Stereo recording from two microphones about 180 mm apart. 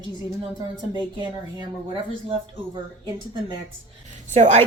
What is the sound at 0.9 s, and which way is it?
Speech, 25° right (ahead or behind).